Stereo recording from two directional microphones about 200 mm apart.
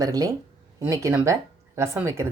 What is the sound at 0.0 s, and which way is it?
Speech, 20° right (ahead or behind).